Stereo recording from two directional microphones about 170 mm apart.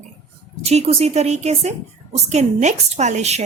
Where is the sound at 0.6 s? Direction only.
40° right (ahead or behind).